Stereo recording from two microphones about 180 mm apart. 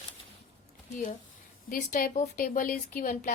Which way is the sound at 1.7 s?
50° left (ahead or behind).